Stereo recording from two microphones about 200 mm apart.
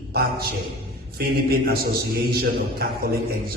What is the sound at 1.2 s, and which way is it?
A man's voice, 50° right (ahead or behind).